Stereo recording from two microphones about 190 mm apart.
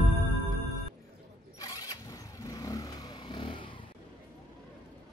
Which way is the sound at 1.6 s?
20° left (ahead or behind).